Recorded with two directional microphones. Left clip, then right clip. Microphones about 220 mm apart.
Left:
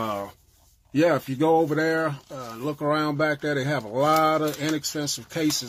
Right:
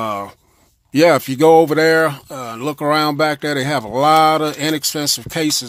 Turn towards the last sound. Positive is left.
turn(degrees=-40)  # may be behind; listen again after turning